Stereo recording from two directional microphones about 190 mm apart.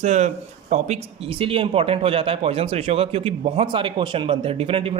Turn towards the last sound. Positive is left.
turn(degrees=-30)  # may be behind; listen again after turning